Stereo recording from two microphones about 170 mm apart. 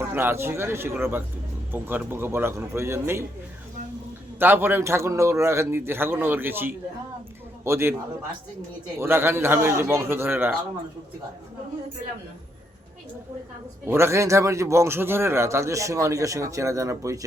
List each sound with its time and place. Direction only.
0.1 s a man's voice: 15° right (ahead or behind)
4.4 s a man's voice: 10° right (ahead or behind)
9.0 s a man's voice: 15° right (ahead or behind)
13.8 s a man's voice: 15° right (ahead or behind)